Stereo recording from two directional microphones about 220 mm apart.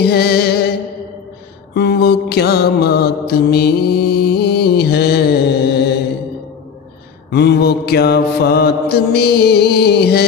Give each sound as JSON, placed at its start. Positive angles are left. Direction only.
{"t": 0.0, "sound": "music", "side_deg": 45}
{"t": 1.7, "sound": "mantra", "side_deg": 50}
{"t": 7.2, "sound": "mantra", "side_deg": 50}